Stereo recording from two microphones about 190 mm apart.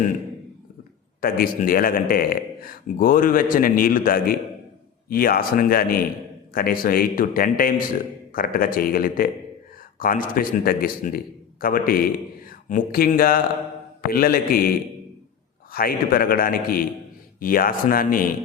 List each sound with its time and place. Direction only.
1.2 s a man's voice: 50° left (ahead or behind)